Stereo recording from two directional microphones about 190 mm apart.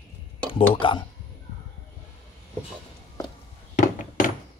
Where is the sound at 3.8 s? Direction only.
45° left (ahead or behind).